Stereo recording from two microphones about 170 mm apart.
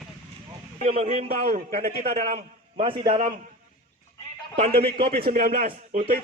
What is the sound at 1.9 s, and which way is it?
A man's voice, 45° right (ahead or behind).